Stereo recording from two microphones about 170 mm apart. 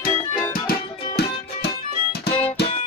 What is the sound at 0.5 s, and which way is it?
Music, 65° left (ahead or behind).